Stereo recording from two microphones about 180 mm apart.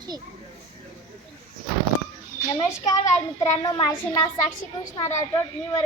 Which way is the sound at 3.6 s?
20° left (ahead or behind).